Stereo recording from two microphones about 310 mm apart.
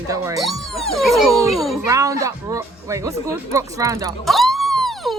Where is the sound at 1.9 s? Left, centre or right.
Centre.